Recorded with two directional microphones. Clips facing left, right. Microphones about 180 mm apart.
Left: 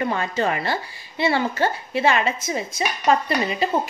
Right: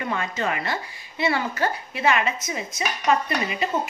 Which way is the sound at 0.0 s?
35° left (ahead or behind).